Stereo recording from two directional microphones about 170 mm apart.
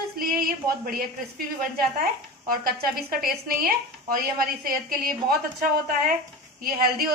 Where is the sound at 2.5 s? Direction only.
60° right (ahead or behind).